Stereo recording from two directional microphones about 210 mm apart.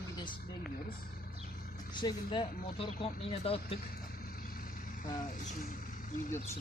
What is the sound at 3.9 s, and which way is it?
Vehicle, 45° left (ahead or behind).